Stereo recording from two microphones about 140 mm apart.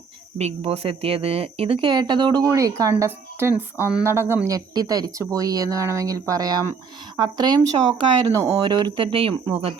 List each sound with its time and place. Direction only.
0.3 s speech: 45° right (ahead or behind)